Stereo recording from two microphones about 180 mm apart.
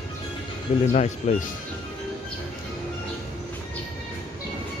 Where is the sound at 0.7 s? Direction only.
45° left (ahead or behind).